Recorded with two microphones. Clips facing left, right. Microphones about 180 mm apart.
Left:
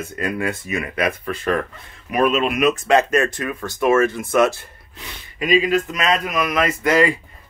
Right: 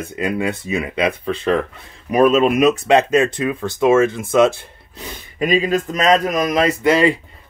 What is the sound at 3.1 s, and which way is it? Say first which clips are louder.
Speech: right 4 dB; 15° right (ahead or behind).